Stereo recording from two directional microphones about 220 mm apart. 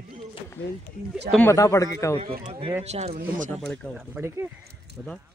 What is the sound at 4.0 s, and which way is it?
Speech, 10° right (ahead or behind).